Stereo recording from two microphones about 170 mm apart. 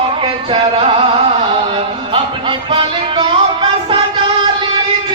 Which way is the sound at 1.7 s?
30° right (ahead or behind).